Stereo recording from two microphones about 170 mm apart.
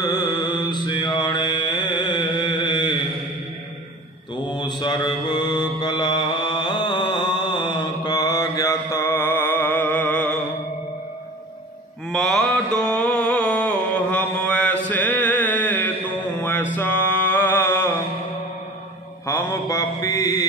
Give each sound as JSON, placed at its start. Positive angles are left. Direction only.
{"t": 0.0, "sound": "mantra", "side_deg": 25}
{"t": 4.5, "sound": "mantra", "side_deg": 25}
{"t": 12.1, "sound": "mantra", "side_deg": 0}
{"t": 14.9, "sound": "a sound", "side_deg": 10}
{"t": 16.3, "sound": "music", "side_deg": 10}
{"t": 16.7, "sound": "mantra", "side_deg": 10}
{"t": 19.2, "sound": "mantra", "side_deg": 20}